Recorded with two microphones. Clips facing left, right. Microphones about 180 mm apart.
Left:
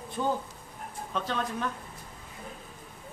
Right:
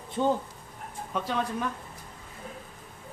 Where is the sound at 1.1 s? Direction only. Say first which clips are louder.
Right 1 dB; 10° right (ahead or behind).